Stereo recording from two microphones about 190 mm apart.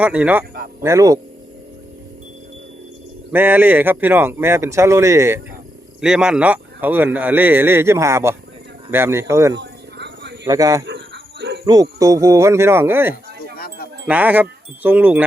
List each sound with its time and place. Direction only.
0.0 s speech: 5° right (ahead or behind)
3.3 s speech: 10° right (ahead or behind)
6.0 s speech: 5° right (ahead or behind)
9.6 s a sound: 65° right (ahead or behind)
10.4 s speech: 20° right (ahead or behind)
10.8 s dog: 65° right (ahead or behind)
11.6 s speech: 20° right (ahead or behind)
13.6 s wind chime: 50° left (ahead or behind)
14.1 s speech: 10° right (ahead or behind)